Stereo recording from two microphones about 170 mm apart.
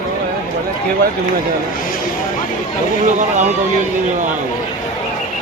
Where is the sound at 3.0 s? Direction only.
45° right (ahead or behind).